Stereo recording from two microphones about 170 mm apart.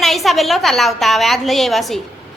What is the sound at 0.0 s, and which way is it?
A woman's voice, centre (ahead or behind).